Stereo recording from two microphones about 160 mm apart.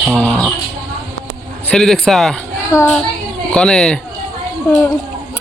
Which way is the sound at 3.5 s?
5° left (ahead or behind).